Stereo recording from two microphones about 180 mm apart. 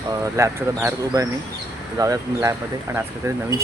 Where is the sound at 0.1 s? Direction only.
15° right (ahead or behind).